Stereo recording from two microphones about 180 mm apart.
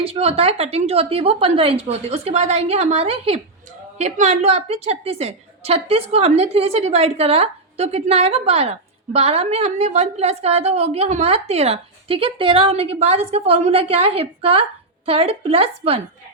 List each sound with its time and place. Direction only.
0.0 s a woman's voice: 35° right (ahead or behind)